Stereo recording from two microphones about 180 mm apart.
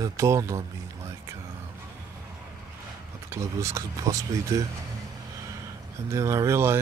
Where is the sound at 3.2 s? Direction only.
15° right (ahead or behind).